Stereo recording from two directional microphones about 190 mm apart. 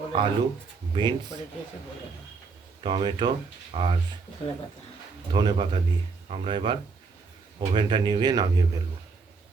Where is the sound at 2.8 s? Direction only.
25° right (ahead or behind).